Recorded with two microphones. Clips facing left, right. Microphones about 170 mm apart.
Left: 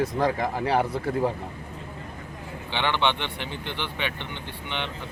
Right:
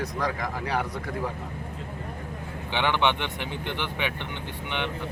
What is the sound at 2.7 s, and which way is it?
Speech, 10° right (ahead or behind).